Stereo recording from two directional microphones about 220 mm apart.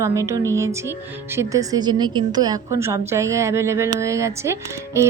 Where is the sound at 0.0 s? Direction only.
15° right (ahead or behind).